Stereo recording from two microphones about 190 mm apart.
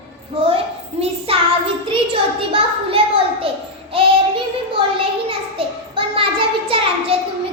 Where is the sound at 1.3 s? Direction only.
30° right (ahead or behind).